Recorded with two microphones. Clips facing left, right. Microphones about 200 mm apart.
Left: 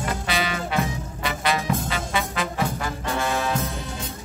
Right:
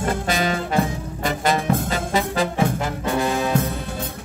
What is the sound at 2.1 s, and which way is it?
Music, 35° right (ahead or behind).